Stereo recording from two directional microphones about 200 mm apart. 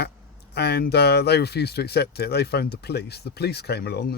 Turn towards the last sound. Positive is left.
turn(degrees=55)  # may be behind; listen again after turning